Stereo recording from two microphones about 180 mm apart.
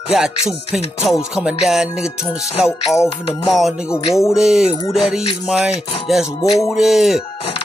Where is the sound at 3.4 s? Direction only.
Centre (ahead or behind).